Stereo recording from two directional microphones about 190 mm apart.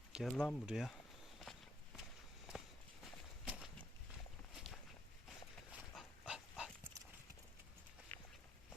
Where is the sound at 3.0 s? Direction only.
5° right (ahead or behind).